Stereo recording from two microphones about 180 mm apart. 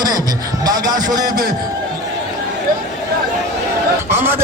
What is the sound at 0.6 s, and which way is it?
Speech, 20° right (ahead or behind).